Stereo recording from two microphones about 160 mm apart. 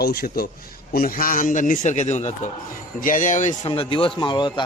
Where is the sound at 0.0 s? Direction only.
75° left (ahead or behind); by 3.7 s 50° left (ahead or behind).